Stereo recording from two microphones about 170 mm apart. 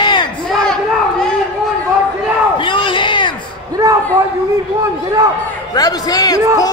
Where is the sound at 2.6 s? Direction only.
30° left (ahead or behind).